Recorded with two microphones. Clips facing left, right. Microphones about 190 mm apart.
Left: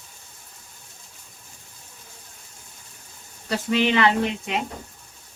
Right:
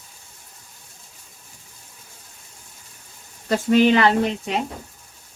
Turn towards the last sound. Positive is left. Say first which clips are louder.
# right 2 dB
turn(degrees=-40)  # may be behind; listen again after turning